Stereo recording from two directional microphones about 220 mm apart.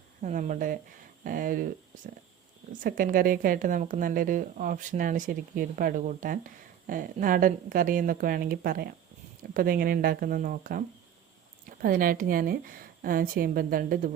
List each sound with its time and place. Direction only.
0.2 s a woman's voice: 35° right (ahead or behind)
2.8 s a woman's voice: 40° right (ahead or behind)